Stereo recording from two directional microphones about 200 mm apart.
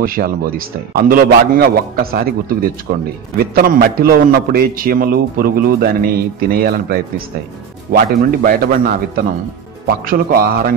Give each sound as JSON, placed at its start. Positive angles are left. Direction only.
{"t": 0.0, "sound": "a man's voice", "side_deg": -45}